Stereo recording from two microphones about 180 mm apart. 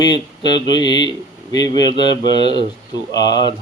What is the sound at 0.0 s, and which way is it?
Speech, 25° left (ahead or behind).